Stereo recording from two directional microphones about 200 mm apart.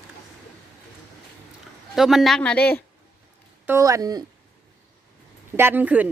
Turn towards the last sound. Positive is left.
turn(degrees=-10)  # may be behind; listen again after turning